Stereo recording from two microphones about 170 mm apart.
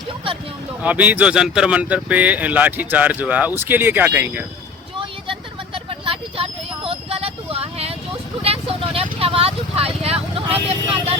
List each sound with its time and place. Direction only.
0.8 s speech: 10° right (ahead or behind)
4.9 s vehicle: 30° right (ahead or behind)
8.4 s speech: 35° right (ahead or behind)